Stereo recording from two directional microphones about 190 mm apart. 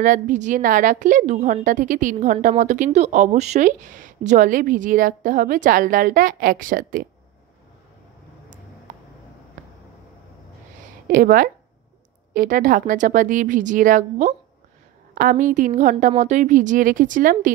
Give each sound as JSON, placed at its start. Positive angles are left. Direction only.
{"t": 0.0, "sound": "a woman's voice", "side_deg": -40}
{"t": 11.1, "sound": "a woman's voice", "side_deg": -50}